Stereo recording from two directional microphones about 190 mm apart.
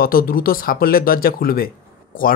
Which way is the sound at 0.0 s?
50° left (ahead or behind).